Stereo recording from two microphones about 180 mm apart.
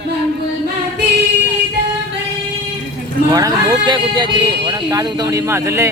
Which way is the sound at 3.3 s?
20° right (ahead or behind).